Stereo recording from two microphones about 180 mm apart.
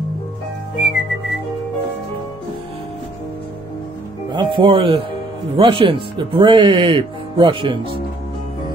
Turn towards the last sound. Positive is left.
turn(degrees=-30)  # may be behind; listen again after turning